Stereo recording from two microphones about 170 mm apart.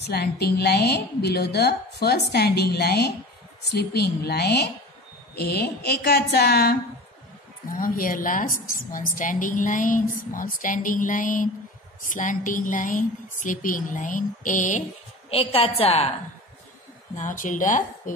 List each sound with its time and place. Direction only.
0.0 s a woman's voice: 70° left (ahead or behind)
7.7 s a woman's voice: 55° left (ahead or behind)
15.2 s a woman's voice: 35° left (ahead or behind)
17.1 s a woman's voice: 50° left (ahead or behind)